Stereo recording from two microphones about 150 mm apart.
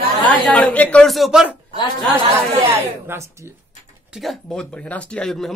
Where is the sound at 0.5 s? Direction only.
10° left (ahead or behind).